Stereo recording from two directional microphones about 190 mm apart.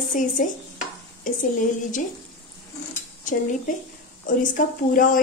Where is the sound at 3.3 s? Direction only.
40° left (ahead or behind).